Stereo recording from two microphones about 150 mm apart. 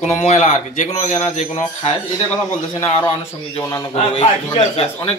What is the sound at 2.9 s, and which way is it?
Speech, 35° left (ahead or behind).